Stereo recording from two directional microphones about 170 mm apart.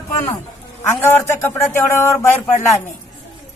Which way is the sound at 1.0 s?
15° left (ahead or behind).